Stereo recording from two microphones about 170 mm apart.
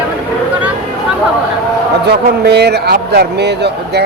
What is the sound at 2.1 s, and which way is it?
A man's voice, 75° right (ahead or behind).